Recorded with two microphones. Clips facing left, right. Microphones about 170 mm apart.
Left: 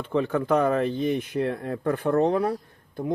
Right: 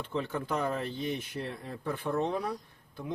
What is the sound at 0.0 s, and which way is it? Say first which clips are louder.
Speech: left 9 dB; 55° left (ahead or behind).